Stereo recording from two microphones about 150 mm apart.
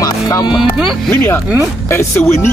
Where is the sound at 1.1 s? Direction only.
15° left (ahead or behind).